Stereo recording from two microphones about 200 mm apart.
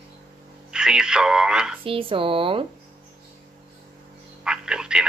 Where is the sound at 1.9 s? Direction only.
25° right (ahead or behind).